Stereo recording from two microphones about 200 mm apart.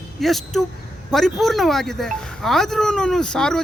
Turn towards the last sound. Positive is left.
turn(degrees=5)  # may be behind; listen again after turning